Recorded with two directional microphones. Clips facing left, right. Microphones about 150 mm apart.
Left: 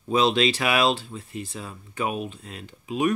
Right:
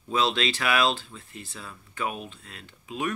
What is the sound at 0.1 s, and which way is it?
Speech, 15° left (ahead or behind).